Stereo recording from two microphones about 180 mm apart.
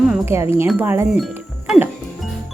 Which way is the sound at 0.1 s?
15° right (ahead or behind).